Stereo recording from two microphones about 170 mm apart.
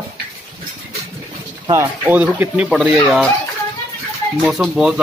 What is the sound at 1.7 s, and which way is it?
Speech, 15° right (ahead or behind).